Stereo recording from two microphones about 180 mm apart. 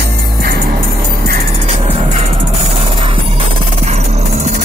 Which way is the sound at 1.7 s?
35° right (ahead or behind).